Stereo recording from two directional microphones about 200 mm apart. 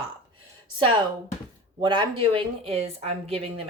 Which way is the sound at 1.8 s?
25° right (ahead or behind).